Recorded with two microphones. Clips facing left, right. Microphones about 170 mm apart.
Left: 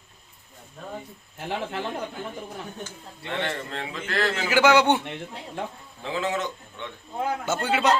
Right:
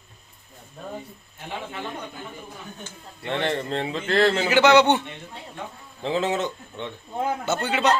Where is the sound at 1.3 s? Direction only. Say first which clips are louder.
Left 4 dB; 85° left.